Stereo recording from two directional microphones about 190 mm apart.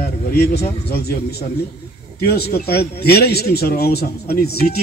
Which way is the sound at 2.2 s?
55° left (ahead or behind).